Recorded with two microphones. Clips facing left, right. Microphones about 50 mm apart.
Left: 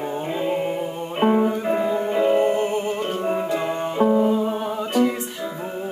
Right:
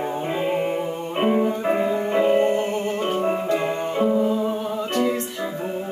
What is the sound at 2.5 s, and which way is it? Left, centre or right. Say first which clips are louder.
Music: left 1 dB; centre.